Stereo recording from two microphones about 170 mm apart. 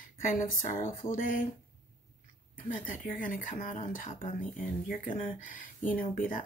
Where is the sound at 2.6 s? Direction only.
55° left (ahead or behind).